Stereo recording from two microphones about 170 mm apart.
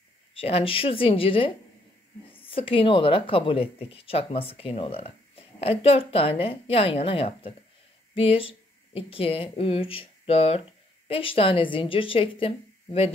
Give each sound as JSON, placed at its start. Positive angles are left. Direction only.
{"t": 0.3, "sound": "speech", "side_deg": 35}